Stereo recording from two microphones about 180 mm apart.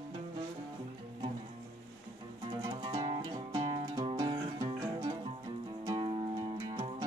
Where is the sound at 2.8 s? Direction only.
25° right (ahead or behind).